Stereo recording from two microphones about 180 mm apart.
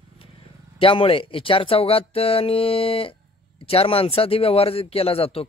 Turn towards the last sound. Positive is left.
turn(degrees=35)  # may be behind; listen again after turning